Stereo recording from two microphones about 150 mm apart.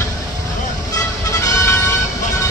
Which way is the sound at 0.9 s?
20° left (ahead or behind).